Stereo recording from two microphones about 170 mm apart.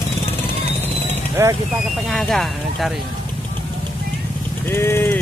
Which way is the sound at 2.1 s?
Centre (ahead or behind).